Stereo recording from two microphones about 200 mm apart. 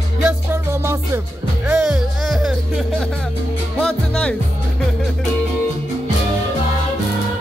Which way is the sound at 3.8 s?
5° left (ahead or behind).